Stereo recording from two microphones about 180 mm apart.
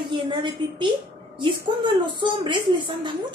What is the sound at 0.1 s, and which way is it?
A woman's voice, 25° right (ahead or behind).